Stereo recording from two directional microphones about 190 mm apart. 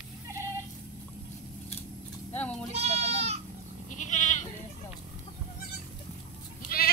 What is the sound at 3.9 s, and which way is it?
Goat, 40° left (ahead or behind).